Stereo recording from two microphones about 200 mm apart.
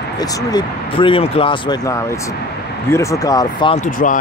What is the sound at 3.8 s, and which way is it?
Speech, 40° left (ahead or behind).